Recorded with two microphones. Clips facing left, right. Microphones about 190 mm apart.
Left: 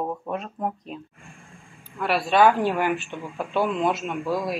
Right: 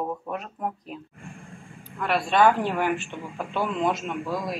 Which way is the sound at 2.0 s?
5° left (ahead or behind).